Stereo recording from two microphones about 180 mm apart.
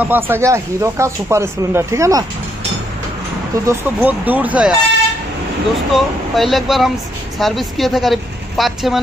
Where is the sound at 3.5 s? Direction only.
15° right (ahead or behind).